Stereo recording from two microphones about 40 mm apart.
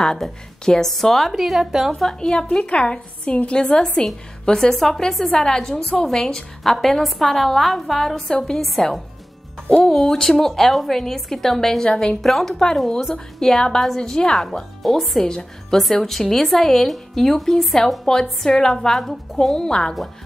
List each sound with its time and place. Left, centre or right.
0.0 s a woman's voice: centre
1.9 s a woman's voice: centre
2.6 s a woman's voice: left
3.6 s a woman's voice: centre
5.3 s a woman's voice: centre
9.8 s a woman's voice: centre
15.2 s a woman's voice: centre
15.8 s speech: centre
18.1 s a woman's voice: centre